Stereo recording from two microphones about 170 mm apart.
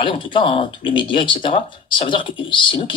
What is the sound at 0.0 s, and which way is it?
Speech, 30° left (ahead or behind).